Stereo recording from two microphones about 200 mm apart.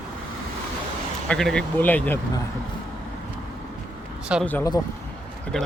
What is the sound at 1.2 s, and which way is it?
Speech, 5° left (ahead or behind).